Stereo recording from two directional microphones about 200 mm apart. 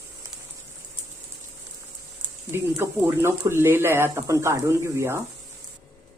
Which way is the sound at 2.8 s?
15° right (ahead or behind).